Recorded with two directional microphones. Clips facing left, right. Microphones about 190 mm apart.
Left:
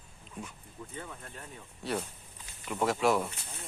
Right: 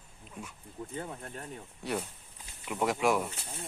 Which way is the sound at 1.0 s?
40° right (ahead or behind).